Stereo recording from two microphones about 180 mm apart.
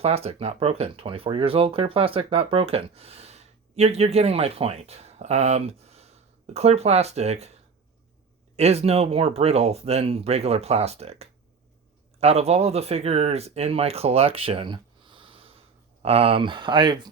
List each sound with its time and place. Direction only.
0.0 s speech: 35° right (ahead or behind)
8.5 s speech: 35° right (ahead or behind)